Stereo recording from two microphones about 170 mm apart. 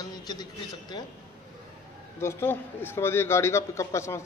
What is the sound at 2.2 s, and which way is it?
Speech, 15° left (ahead or behind).